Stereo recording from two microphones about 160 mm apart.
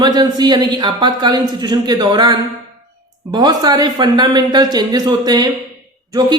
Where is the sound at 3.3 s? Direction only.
25° right (ahead or behind).